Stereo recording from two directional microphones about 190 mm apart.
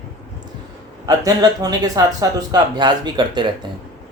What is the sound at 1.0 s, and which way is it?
Speech, 20° right (ahead or behind).